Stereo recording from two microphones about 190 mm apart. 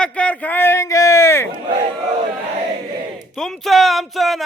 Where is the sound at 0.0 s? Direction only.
5° left (ahead or behind).